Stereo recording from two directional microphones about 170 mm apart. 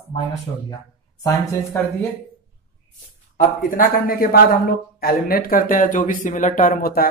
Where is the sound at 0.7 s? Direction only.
20° left (ahead or behind).